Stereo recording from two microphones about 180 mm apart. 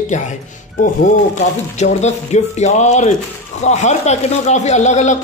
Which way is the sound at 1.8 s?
40° left (ahead or behind).